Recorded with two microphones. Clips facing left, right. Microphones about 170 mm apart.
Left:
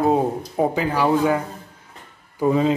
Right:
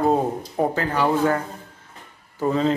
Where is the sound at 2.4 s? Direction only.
15° left (ahead or behind).